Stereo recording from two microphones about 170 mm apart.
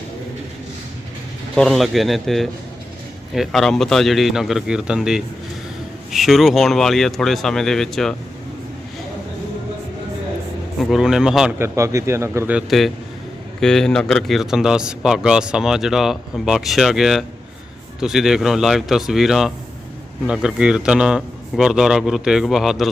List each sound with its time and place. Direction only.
1.5 s a man's voice: centre (ahead or behind)
10.8 s a man's voice: centre (ahead or behind)
11.6 s a man's voice: 15° right (ahead or behind)